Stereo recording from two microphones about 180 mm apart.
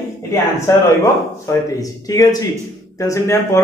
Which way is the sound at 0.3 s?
15° left (ahead or behind).